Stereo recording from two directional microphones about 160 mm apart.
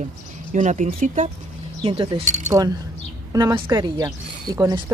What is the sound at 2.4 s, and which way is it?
Speech, 20° right (ahead or behind).